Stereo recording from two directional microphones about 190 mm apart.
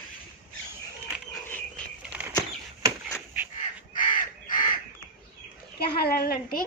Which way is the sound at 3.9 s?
45° left (ahead or behind).